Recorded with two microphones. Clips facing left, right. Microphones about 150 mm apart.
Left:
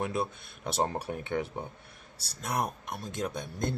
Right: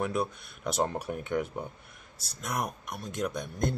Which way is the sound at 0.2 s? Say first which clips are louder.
Right 1 dB; 30° left (ahead or behind).